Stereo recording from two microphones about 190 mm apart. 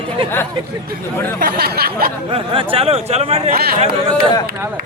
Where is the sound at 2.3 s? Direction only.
30° right (ahead or behind).